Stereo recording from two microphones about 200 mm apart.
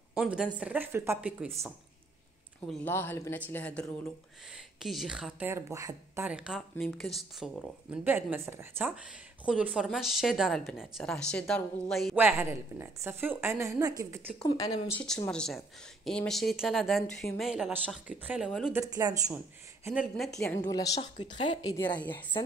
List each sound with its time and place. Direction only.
0.1 s a woman's voice: 5° right (ahead or behind)
2.6 s a woman's voice: 10° left (ahead or behind)
12.2 s a woman's voice: 10° right (ahead or behind)
14.6 s speech: 15° left (ahead or behind)
15.0 s a woman's voice: 5° left (ahead or behind)
18.9 s speech: 20° right (ahead or behind)
19.9 s a woman's voice: centre (ahead or behind)
20.6 s a woman's voice: 20° left (ahead or behind)